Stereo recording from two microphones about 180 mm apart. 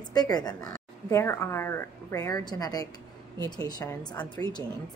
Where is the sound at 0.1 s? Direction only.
20° left (ahead or behind).